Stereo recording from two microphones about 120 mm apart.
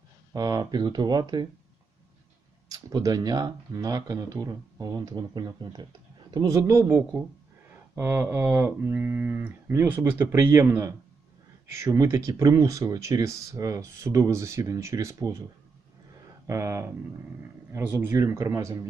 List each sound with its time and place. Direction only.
0.3 s speech: 30° right (ahead or behind)
2.6 s speech: 30° right (ahead or behind)
16.5 s speech: 25° right (ahead or behind)